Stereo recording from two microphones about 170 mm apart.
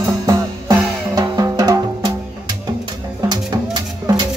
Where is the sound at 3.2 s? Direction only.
25° right (ahead or behind).